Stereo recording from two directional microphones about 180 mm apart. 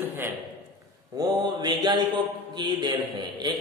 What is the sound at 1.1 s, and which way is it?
Mantra, 20° right (ahead or behind).